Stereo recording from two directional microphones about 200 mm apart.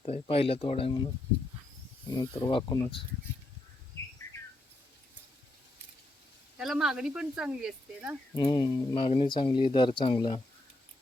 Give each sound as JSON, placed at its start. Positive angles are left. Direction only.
{"t": 0.0, "sound": "speech", "side_deg": 30}
{"t": 2.0, "sound": "speech", "side_deg": 20}
{"t": 6.6, "sound": "speech", "side_deg": 0}
{"t": 8.4, "sound": "speech", "side_deg": 20}